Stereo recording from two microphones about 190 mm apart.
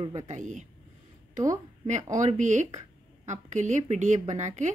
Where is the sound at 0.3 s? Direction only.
40° right (ahead or behind).